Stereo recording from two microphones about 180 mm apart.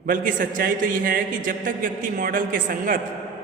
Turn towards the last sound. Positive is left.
turn(degrees=-50)  # may be behind; listen again after turning